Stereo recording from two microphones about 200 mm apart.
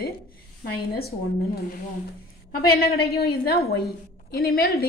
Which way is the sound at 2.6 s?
50° left (ahead or behind).